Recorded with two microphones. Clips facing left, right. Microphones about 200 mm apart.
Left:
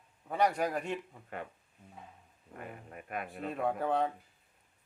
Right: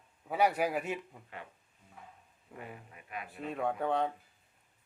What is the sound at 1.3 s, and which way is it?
Speech, 50° left (ahead or behind).